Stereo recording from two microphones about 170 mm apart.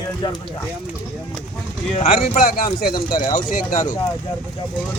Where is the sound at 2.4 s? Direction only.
60° left (ahead or behind).